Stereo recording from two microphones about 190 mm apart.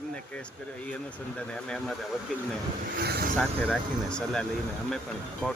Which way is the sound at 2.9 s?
55° right (ahead or behind).